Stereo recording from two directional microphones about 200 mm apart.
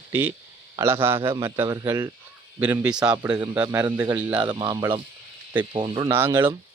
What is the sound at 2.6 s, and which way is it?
Speech, 5° right (ahead or behind).